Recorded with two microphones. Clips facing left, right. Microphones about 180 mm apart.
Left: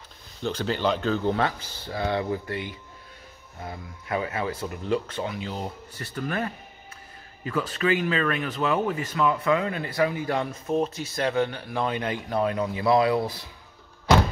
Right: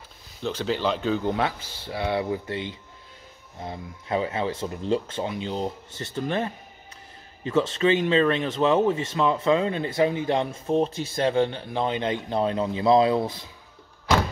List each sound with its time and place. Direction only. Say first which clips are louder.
0.4 s speech: even; 5° right (ahead or behind); by 13.5 s 20° right (ahead or behind)